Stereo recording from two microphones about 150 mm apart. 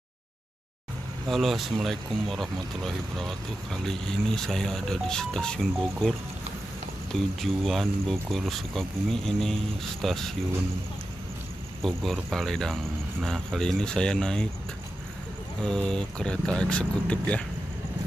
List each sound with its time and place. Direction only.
1.3 s speech: centre (ahead or behind)
11.8 s speech: centre (ahead or behind)
15.6 s speech: 5° left (ahead or behind)